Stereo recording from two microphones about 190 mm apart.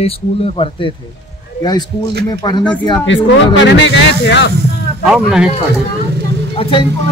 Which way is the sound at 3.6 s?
70° left (ahead or behind).